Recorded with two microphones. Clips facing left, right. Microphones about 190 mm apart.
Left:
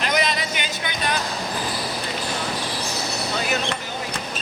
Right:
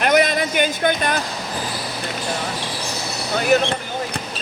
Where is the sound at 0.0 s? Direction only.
55° right (ahead or behind).